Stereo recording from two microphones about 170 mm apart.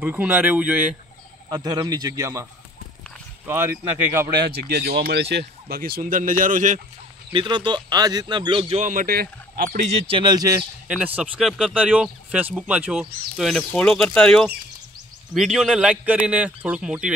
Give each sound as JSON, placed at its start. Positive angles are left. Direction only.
{"t": 0.0, "sound": "speech", "side_deg": -10}
{"t": 1.5, "sound": "speech", "side_deg": -25}
{"t": 4.1, "sound": "speech", "side_deg": -15}
{"t": 4.6, "sound": "a man's voice", "side_deg": -70}
{"t": 7.3, "sound": "speech", "side_deg": -25}
{"t": 10.9, "sound": "speech", "side_deg": -5}
{"t": 13.4, "sound": "a man's voice", "side_deg": 5}